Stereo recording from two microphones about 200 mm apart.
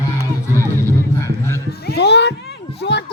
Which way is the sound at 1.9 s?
55° left (ahead or behind).